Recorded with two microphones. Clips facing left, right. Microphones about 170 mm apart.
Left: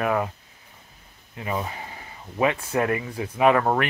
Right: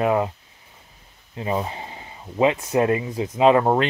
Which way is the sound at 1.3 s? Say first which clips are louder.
Right 4 dB; 25° right (ahead or behind).